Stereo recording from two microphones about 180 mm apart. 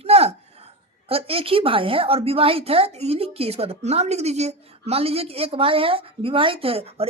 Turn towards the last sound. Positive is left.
turn(degrees=-35)  # may be behind; listen again after turning